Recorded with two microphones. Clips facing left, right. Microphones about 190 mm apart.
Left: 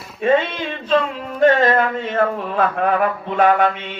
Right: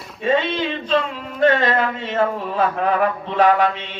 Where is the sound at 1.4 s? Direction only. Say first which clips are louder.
Left 3 dB; 45° left (ahead or behind).